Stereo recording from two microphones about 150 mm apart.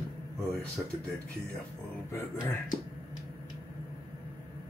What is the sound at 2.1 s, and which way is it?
Speech, 20° left (ahead or behind).